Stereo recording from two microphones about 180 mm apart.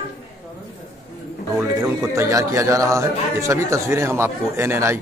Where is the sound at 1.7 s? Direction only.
15° right (ahead or behind).